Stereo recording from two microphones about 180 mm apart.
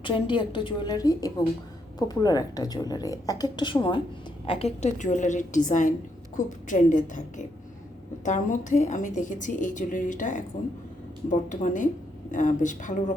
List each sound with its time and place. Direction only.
0.0 s a woman's voice: 30° left (ahead or behind); by 13.1 s 45° left (ahead or behind)